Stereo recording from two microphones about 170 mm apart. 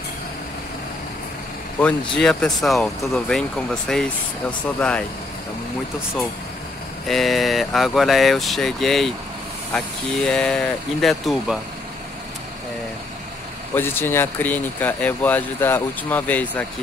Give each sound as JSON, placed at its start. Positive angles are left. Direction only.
{"t": 1.8, "sound": "speech", "side_deg": 5}
{"t": 7.1, "sound": "speech", "side_deg": 0}
{"t": 13.7, "sound": "speech", "side_deg": 15}